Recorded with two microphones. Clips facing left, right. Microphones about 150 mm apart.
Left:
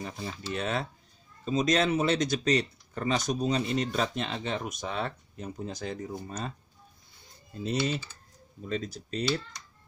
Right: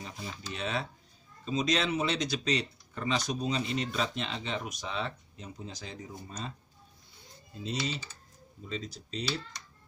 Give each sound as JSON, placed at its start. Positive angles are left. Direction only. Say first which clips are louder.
{"t": 0.0, "sound": "speech", "louder": "left 5 dB", "side_deg": 50}
{"t": 7.6, "sound": "speech", "louder": "left 5 dB", "side_deg": 50}